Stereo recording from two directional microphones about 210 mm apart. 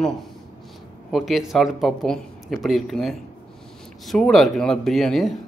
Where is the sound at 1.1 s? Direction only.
Centre (ahead or behind).